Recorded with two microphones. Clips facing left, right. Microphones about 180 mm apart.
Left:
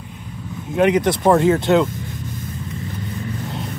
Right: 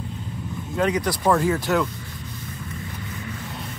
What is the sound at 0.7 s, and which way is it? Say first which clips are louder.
Speech: left 7 dB; 20° left (ahead or behind).